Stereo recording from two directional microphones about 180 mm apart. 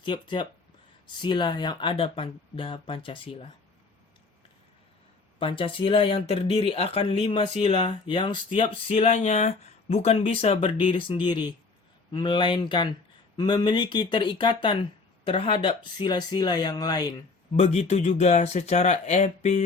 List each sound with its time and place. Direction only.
0.0 s speech: 25° left (ahead or behind)
5.4 s speech: 30° left (ahead or behind)
17.6 s speech: 35° left (ahead or behind)